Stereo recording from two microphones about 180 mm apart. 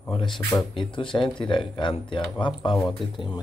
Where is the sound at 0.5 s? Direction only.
25° left (ahead or behind).